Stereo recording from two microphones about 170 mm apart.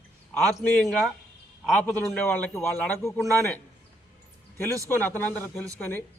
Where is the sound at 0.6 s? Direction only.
10° left (ahead or behind).